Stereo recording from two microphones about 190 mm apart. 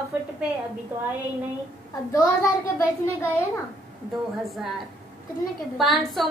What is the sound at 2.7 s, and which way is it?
Speech, 15° left (ahead or behind).